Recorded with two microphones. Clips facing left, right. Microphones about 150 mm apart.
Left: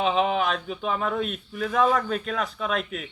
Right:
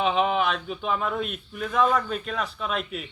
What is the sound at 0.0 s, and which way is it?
Speech, 35° left (ahead or behind).